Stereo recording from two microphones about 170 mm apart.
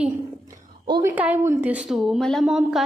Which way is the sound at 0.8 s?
25° right (ahead or behind).